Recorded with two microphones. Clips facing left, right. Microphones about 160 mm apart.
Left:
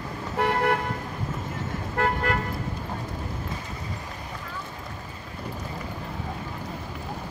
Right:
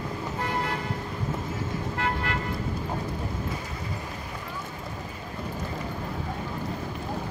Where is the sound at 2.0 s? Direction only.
50° left (ahead or behind).